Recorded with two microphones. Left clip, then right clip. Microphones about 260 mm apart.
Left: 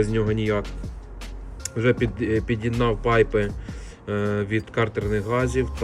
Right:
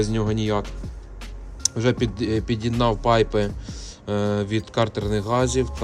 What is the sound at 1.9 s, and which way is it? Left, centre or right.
Speech, centre.